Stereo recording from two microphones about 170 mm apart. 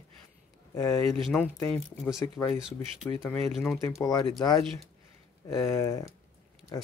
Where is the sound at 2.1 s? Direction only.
20° left (ahead or behind).